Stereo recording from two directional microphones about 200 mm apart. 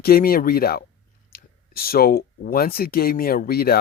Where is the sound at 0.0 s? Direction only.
50° left (ahead or behind).